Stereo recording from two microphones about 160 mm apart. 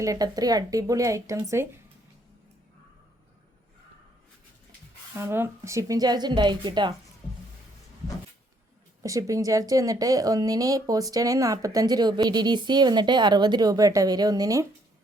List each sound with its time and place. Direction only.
0.0 s speech: 20° right (ahead or behind)
5.1 s speech: 15° right (ahead or behind)
9.0 s speech: 20° right (ahead or behind)